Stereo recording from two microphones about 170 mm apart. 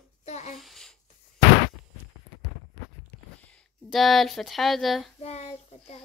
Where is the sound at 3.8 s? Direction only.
Centre (ahead or behind).